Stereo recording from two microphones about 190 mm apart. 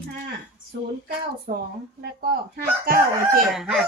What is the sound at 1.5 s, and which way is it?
Speech, 40° right (ahead or behind).